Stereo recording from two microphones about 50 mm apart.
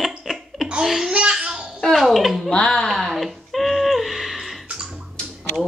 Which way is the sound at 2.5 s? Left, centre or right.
Centre.